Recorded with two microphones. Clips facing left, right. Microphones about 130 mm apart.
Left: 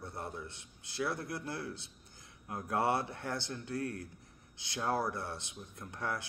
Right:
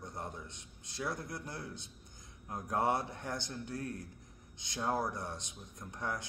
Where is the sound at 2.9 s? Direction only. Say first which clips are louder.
Left 1 dB; 60° left (ahead or behind).